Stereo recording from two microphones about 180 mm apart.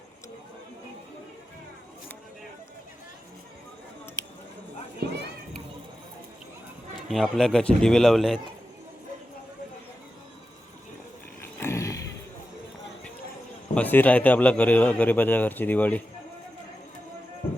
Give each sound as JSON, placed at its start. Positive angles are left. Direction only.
{"t": 5.0, "sound": "children playing", "side_deg": -65}
{"t": 7.1, "sound": "a man's voice", "side_deg": 0}
{"t": 11.6, "sound": "a sound", "side_deg": 15}
{"t": 13.7, "sound": "a man's voice", "side_deg": 10}